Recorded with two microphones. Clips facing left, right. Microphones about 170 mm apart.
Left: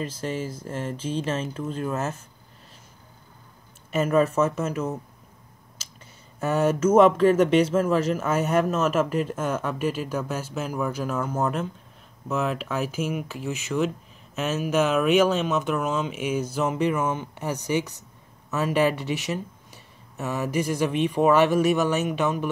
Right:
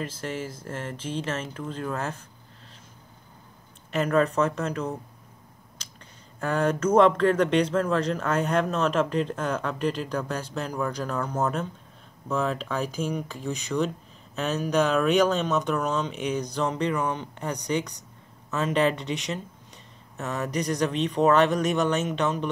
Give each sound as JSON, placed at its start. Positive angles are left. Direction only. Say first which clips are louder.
{"t": 0.0, "sound": "speech", "louder": "left 3 dB", "side_deg": 10}
{"t": 3.9, "sound": "speech", "louder": "left 2 dB", "side_deg": 5}
{"t": 6.4, "sound": "speech", "louder": "left 3 dB", "side_deg": 10}